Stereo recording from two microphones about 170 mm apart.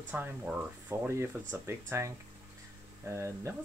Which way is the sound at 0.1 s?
10° right (ahead or behind).